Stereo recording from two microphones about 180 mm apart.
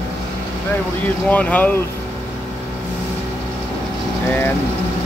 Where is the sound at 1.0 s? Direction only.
10° left (ahead or behind).